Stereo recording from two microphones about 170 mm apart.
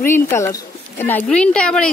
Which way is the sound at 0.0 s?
15° left (ahead or behind).